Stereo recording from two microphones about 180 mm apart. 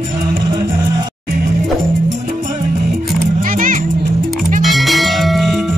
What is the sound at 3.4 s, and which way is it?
Music, 50° right (ahead or behind).